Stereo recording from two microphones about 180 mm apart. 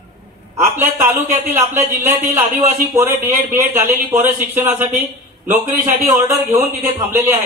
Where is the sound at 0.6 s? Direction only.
15° right (ahead or behind).